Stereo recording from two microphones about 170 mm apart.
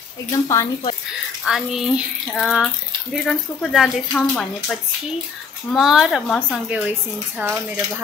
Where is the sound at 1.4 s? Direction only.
Centre (ahead or behind).